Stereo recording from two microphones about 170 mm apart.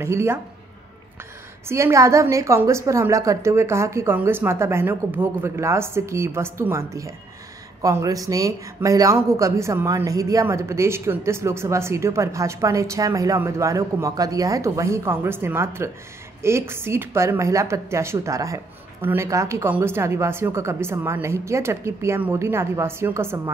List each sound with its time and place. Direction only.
0.0 s speech: 15° right (ahead or behind)
1.7 s speech: 15° right (ahead or behind)